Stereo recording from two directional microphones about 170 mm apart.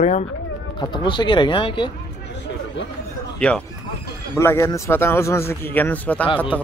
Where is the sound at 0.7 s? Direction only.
25° left (ahead or behind).